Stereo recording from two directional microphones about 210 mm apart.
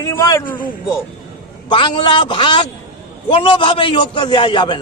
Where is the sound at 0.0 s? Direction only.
15° left (ahead or behind).